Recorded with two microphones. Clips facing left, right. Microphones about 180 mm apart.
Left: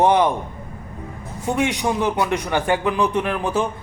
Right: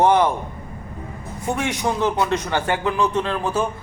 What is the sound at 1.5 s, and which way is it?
A man's voice, 15° left (ahead or behind).